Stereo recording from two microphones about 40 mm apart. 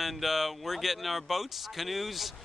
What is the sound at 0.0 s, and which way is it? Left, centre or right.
Speech, centre.